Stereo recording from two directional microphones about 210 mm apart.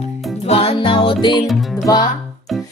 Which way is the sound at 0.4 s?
30° left (ahead or behind).